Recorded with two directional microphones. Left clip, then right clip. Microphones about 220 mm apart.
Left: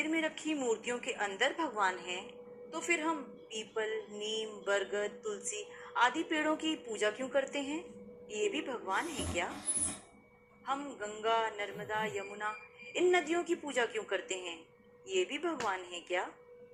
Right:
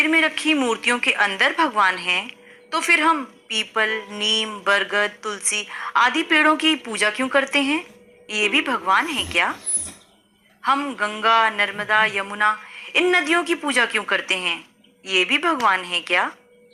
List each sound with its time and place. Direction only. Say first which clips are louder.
0.0 s a woman's voice: right 17 dB; 40° right (ahead or behind)
10.6 s a woman's voice: right 17 dB; 40° right (ahead or behind)